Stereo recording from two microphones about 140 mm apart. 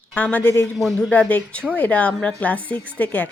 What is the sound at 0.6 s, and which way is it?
A woman's voice, centre (ahead or behind).